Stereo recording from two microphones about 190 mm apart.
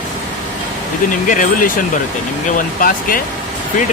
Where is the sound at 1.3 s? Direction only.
45° left (ahead or behind).